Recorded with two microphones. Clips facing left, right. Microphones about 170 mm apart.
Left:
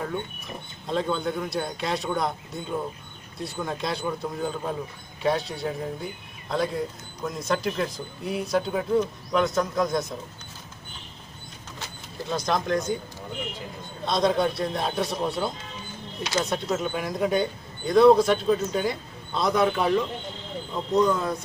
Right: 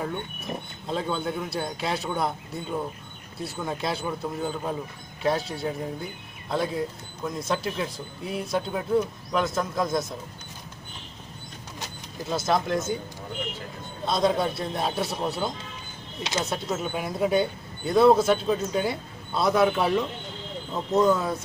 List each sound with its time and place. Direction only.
0.8 s a man's voice: centre (ahead or behind)
12.3 s a man's voice: 5° right (ahead or behind)
14.0 s a man's voice: centre (ahead or behind)
16.2 s speech: 25° right (ahead or behind)
16.4 s a man's voice: centre (ahead or behind)
20.9 s a man's voice: 5° right (ahead or behind)